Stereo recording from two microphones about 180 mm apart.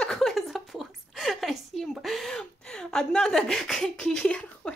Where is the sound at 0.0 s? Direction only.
Centre (ahead or behind).